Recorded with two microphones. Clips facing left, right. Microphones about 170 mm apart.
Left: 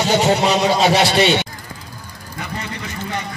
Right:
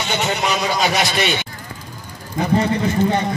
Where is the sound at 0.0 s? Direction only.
35° left (ahead or behind).